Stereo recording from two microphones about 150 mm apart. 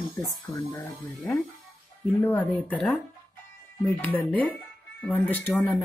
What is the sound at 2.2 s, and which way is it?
Speech, 10° left (ahead or behind).